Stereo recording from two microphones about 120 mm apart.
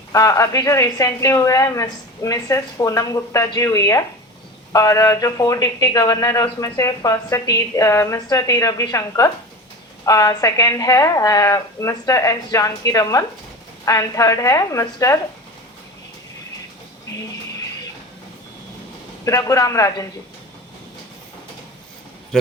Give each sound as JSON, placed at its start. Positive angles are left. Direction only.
{"t": 0.1, "sound": "a woman's voice", "side_deg": 30}
{"t": 19.2, "sound": "a woman's voice", "side_deg": 30}